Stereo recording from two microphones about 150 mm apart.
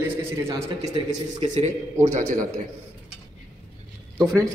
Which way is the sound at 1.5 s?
55° right (ahead or behind).